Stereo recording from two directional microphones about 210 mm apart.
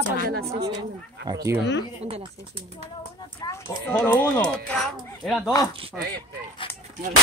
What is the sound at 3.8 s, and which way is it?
Speech, 10° left (ahead or behind).